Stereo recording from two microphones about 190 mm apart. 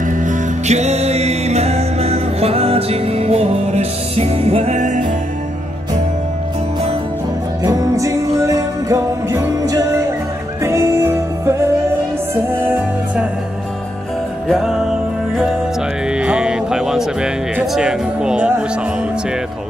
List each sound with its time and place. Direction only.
0.2 s music: 40° right (ahead or behind)
7.6 s music: 15° right (ahead or behind)
14.5 s music: centre (ahead or behind)
16.1 s speech: 5° right (ahead or behind)